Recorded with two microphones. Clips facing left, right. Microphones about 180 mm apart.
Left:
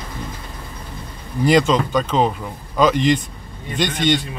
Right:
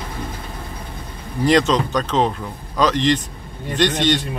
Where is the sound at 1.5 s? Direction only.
5° left (ahead or behind).